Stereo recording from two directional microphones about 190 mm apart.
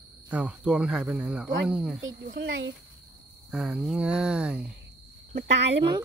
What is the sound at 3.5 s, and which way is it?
Speech, 5° right (ahead or behind).